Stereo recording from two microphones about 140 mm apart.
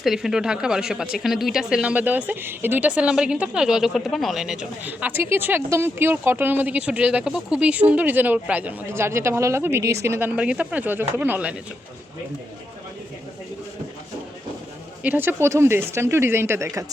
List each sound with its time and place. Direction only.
0.0 s speech: 5° right (ahead or behind)
15.0 s speech: 15° right (ahead or behind)